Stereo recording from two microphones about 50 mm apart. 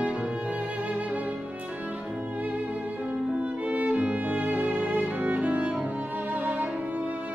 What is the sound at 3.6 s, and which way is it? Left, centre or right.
Music, right.